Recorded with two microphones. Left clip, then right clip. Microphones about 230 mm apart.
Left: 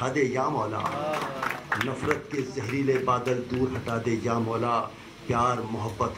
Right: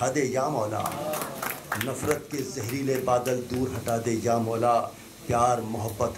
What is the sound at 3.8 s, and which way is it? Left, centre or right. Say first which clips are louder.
A man's voice: right 2 dB; right.